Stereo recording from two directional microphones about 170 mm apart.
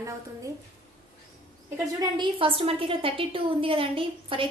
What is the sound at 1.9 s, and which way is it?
A woman's voice, 30° right (ahead or behind).